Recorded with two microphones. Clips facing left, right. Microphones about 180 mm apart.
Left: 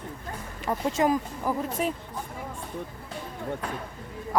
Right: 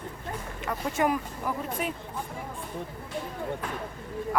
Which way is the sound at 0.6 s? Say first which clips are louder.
Left 3 dB; 25° left (ahead or behind).